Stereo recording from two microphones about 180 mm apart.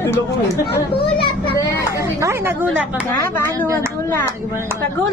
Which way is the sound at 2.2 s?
10° right (ahead or behind).